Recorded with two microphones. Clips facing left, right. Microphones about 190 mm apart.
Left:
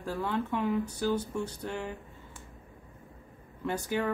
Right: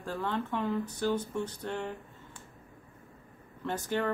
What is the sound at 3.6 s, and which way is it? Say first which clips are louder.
Speech: left 1 dB; 10° left (ahead or behind).